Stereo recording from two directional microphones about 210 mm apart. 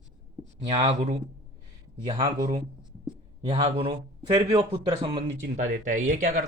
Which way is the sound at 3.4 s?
25° right (ahead or behind).